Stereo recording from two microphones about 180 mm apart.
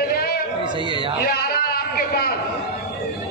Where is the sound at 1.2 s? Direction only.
60° left (ahead or behind).